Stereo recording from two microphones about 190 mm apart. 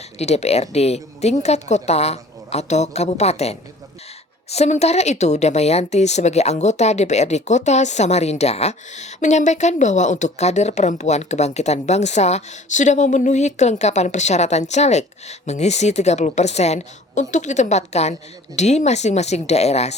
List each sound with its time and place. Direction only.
0.2 s a woman's voice: 35° left (ahead or behind)